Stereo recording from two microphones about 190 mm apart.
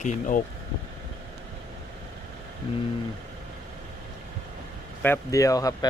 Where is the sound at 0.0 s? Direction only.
45° left (ahead or behind).